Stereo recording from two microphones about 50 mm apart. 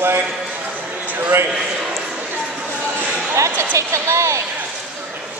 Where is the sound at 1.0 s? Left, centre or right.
Right.